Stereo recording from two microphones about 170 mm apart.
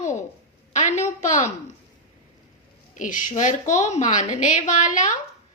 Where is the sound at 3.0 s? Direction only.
50° left (ahead or behind).